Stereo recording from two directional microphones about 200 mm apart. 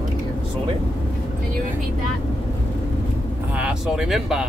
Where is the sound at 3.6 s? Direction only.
5° right (ahead or behind).